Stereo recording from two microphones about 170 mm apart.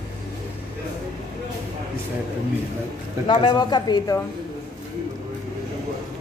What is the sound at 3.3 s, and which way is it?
Speech, 30° left (ahead or behind).